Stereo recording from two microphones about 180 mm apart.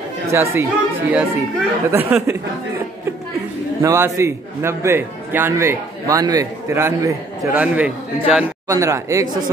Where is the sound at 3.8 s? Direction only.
15° right (ahead or behind).